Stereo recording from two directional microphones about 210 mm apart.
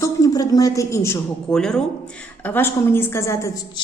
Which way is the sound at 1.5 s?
5° left (ahead or behind).